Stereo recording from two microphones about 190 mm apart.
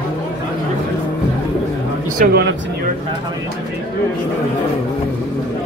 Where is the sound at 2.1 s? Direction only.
50° right (ahead or behind).